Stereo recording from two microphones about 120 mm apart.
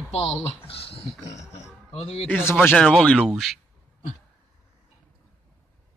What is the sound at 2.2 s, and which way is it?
Speech, 15° left (ahead or behind).